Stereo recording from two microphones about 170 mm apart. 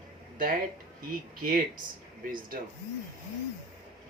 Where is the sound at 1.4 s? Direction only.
55° right (ahead or behind).